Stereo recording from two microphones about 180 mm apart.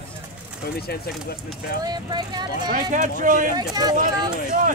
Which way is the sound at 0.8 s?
60° left (ahead or behind).